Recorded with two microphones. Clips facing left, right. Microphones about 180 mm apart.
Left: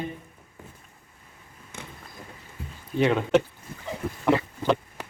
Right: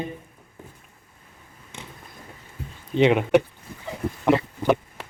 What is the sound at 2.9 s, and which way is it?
Speech, 20° right (ahead or behind).